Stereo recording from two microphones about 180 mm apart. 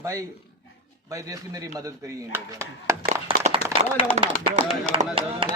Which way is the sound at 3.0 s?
30° right (ahead or behind).